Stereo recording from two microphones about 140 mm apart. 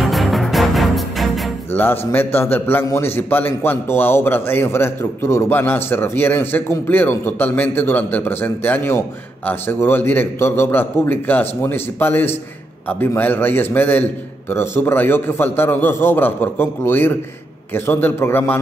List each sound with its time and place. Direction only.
0.0 s music: centre (ahead or behind)
1.7 s a man's voice: 15° left (ahead or behind)